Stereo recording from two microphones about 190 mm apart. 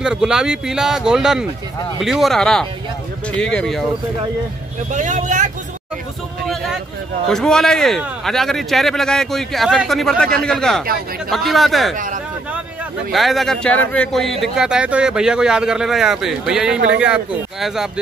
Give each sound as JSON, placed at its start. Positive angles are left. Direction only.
{"t": 0.0, "sound": "speech", "side_deg": -5}
{"t": 4.9, "sound": "speech", "side_deg": -40}
{"t": 6.4, "sound": "vehicle", "side_deg": 0}
{"t": 7.2, "sound": "speech", "side_deg": 5}
{"t": 13.1, "sound": "speech", "side_deg": 0}